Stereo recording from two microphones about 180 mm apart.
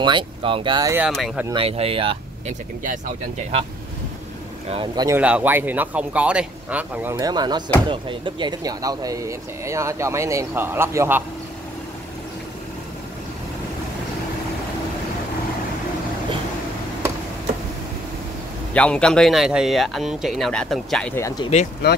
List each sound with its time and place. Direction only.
0.0 s speech: 30° right (ahead or behind)
0.9 s speech: 5° right (ahead or behind)
1.5 s speech: 30° right (ahead or behind)
4.6 s speech: 30° right (ahead or behind)
5.0 s speech: 10° right (ahead or behind)
18.7 s speech: 5° left (ahead or behind)
21.1 s speech: 15° left (ahead or behind)